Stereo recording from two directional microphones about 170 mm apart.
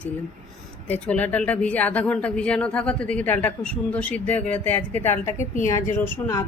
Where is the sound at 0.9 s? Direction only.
10° left (ahead or behind).